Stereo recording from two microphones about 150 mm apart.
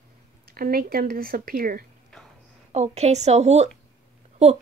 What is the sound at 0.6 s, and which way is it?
A woman's voice, 75° right (ahead or behind).